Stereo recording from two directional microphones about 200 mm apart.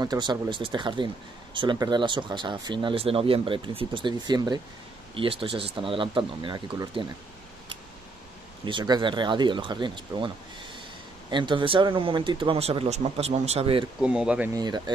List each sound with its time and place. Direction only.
0.0 s speech: 20° right (ahead or behind)
8.6 s speech: 20° right (ahead or behind)
14.0 s speech: 5° right (ahead or behind)
14.5 s speech: 20° right (ahead or behind)